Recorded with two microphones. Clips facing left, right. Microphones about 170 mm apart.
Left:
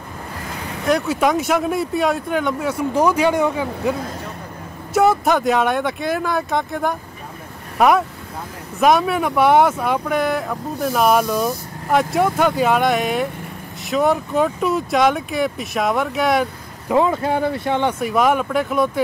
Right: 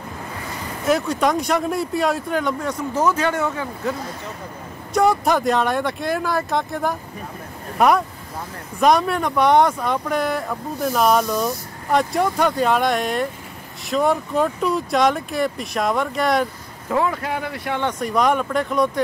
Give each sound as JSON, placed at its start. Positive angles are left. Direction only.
{"t": 0.8, "sound": "speech", "side_deg": 0}
{"t": 4.9, "sound": "speech", "side_deg": 0}
{"t": 16.9, "sound": "speech", "side_deg": 25}
{"t": 17.8, "sound": "speech", "side_deg": 5}